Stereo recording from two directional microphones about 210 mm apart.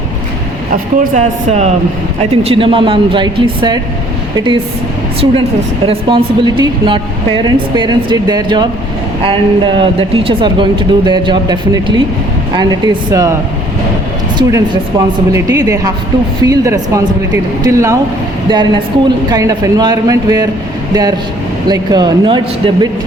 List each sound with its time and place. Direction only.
0.9 s speech: 35° right (ahead or behind)
5.8 s speech: 25° right (ahead or behind)
14.3 s a woman's voice: 20° right (ahead or behind)